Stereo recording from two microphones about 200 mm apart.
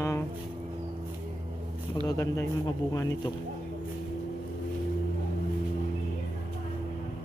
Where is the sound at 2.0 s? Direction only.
15° left (ahead or behind).